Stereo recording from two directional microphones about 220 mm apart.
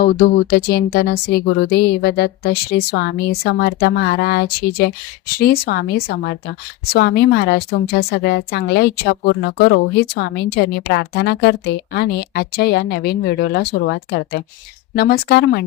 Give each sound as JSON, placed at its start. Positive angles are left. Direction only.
{"t": 0.0, "sound": "a woman's voice", "side_deg": 40}